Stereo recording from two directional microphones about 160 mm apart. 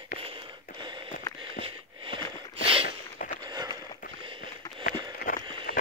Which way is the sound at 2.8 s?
60° left (ahead or behind).